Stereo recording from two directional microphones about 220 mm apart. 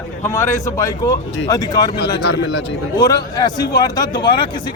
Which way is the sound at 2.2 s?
55° left (ahead or behind).